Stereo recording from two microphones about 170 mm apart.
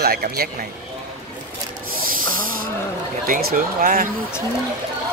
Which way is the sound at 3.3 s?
60° right (ahead or behind).